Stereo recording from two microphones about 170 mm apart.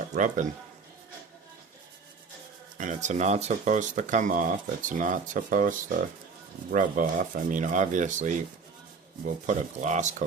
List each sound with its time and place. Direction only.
2.7 s speech: 45° right (ahead or behind)